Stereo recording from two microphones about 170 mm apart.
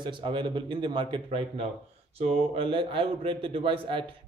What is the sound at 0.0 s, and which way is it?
A man's voice, 30° right (ahead or behind).